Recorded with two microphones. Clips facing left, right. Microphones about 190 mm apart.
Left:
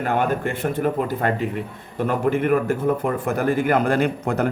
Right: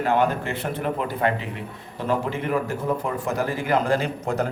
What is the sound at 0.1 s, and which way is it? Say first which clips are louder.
A man's voice: even; 50° left (ahead or behind).